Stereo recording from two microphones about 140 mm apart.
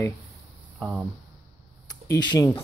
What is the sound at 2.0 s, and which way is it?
Speech, 25° left (ahead or behind).